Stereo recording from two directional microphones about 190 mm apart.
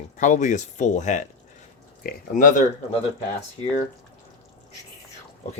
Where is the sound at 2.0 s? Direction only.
50° left (ahead or behind).